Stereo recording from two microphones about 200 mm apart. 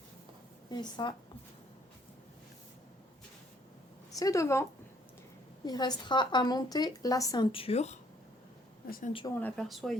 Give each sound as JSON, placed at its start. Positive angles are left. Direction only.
{"t": 0.7, "sound": "a woman's voice", "side_deg": 20}
{"t": 4.2, "sound": "a woman's voice", "side_deg": 15}
{"t": 9.3, "sound": "speech", "side_deg": 5}